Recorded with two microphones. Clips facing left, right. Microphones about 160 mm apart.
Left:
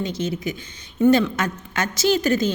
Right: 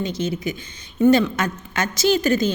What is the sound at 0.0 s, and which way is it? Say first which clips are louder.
A woman's voice: right 1 dB; 15° right (ahead or behind).